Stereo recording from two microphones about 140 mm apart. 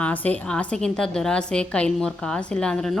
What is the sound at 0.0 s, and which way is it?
A woman's voice, 10° left (ahead or behind).